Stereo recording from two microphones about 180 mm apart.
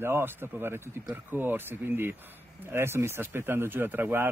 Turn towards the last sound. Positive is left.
turn(degrees=-10)  # may be behind; listen again after turning